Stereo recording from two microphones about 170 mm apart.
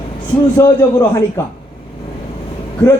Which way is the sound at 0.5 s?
20° left (ahead or behind).